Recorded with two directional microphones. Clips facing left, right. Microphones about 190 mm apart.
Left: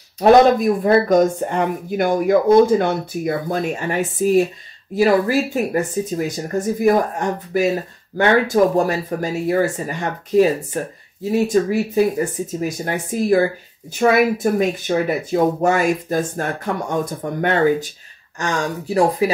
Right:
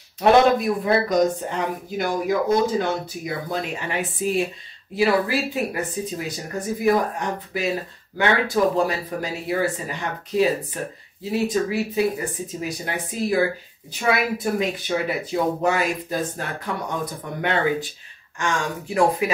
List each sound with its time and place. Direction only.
0.2 s speech: 40° left (ahead or behind)
8.7 s speech: 45° left (ahead or behind)